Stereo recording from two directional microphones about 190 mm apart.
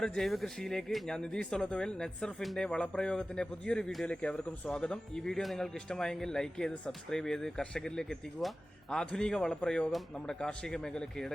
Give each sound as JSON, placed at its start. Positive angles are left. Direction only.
{"t": 0.0, "sound": "speech", "side_deg": 0}